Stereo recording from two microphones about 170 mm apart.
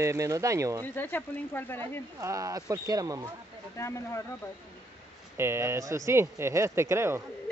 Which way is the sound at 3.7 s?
15° left (ahead or behind).